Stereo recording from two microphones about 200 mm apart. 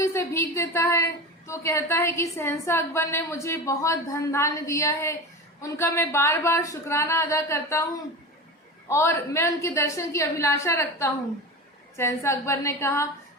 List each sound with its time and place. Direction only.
0.0 s a woman's voice: 15° left (ahead or behind)
8.9 s a woman's voice: 15° left (ahead or behind)
11.9 s a woman's voice: 15° left (ahead or behind)